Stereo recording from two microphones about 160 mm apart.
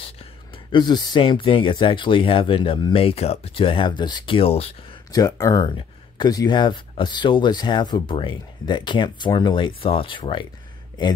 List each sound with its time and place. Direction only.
0.0 s speech: 30° left (ahead or behind)
5.1 s speech: 20° left (ahead or behind)